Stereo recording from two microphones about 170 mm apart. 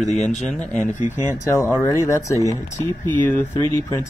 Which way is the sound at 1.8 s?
15° left (ahead or behind).